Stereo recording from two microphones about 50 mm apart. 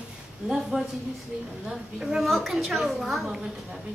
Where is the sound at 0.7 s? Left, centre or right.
Centre.